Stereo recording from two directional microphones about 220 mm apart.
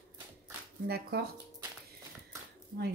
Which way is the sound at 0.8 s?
45° right (ahead or behind).